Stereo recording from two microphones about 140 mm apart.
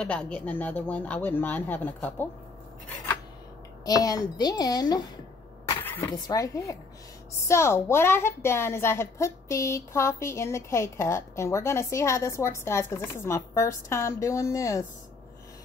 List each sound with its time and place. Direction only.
0.0 s speech: 10° left (ahead or behind)
3.8 s a woman's voice: 25° left (ahead or behind)